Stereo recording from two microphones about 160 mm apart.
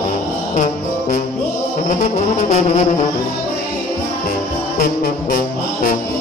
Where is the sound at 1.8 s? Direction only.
45° left (ahead or behind).